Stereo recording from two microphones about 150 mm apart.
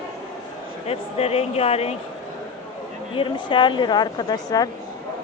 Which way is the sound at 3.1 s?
35° left (ahead or behind).